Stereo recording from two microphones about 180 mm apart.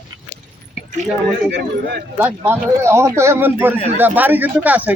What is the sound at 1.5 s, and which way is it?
Speech, 65° right (ahead or behind).